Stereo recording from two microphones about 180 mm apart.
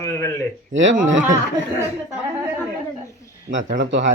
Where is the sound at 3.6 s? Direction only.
80° right.